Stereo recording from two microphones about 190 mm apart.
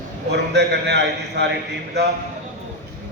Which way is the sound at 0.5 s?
60° right (ahead or behind).